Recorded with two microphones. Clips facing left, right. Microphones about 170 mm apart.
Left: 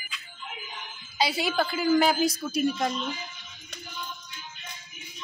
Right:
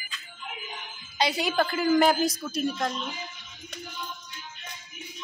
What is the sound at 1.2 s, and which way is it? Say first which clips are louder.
A woman's voice: right 1 dB; 5° left (ahead or behind).